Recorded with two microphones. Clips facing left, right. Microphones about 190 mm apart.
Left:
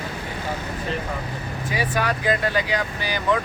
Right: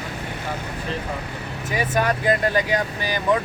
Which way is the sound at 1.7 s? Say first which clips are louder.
Right 3 dB; 45° right (ahead or behind).